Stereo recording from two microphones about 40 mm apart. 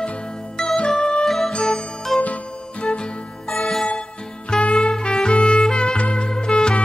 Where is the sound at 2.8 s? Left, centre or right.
Left.